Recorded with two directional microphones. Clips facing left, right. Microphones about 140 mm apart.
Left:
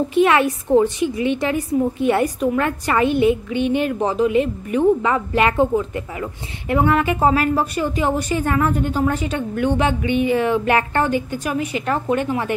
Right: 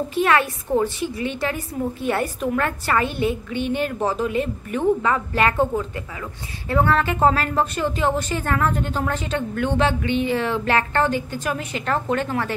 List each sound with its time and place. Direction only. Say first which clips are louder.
0.1 s a woman's voice: left 4 dB; 20° left (ahead or behind)